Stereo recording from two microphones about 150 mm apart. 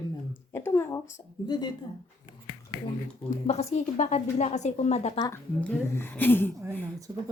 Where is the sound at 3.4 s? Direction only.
45° left (ahead or behind).